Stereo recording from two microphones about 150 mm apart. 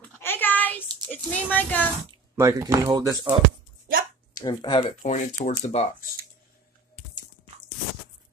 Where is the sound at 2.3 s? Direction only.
20° right (ahead or behind).